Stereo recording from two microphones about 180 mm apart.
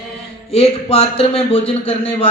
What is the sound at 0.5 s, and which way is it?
A man's voice, 35° left (ahead or behind).